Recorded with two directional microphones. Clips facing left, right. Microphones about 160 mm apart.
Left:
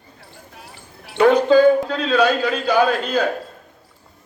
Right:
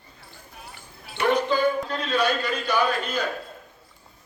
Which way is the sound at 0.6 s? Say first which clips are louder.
Even; 75° left (ahead or behind).